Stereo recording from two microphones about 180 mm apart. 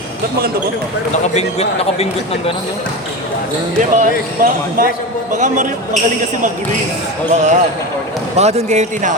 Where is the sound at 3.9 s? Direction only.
50° right (ahead or behind).